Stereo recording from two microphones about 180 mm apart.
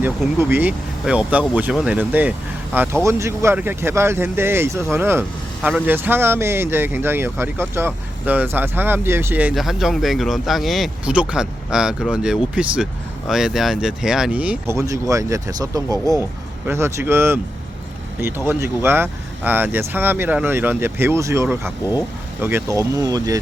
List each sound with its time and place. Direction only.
0.0 s speech: 10° right (ahead or behind)